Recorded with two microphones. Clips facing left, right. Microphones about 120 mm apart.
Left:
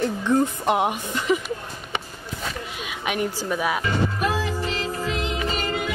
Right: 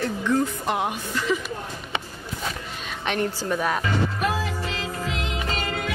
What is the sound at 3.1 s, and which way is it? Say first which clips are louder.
Speech: even; 10° left (ahead or behind).